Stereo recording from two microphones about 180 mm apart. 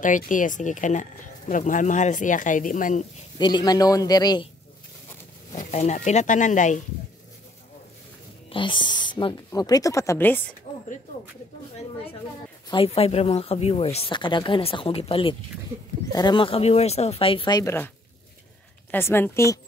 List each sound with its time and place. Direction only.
0.0 s speech: 45° left (ahead or behind)
3.3 s a woman's voice: 25° left (ahead or behind)
5.6 s speech: 40° left (ahead or behind)
8.5 s a woman's voice: 25° left (ahead or behind); by 10.4 s 10° left (ahead or behind)
12.6 s speech: 30° left (ahead or behind)